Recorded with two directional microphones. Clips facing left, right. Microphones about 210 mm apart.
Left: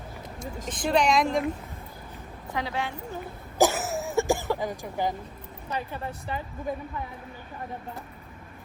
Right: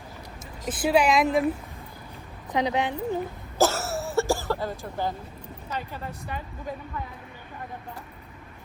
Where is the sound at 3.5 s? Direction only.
15° left (ahead or behind).